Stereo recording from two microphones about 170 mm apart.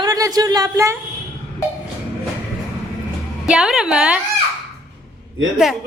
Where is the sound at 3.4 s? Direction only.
5° right (ahead or behind).